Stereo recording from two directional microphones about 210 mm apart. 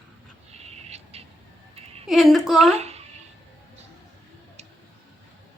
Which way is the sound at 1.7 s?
30° right (ahead or behind).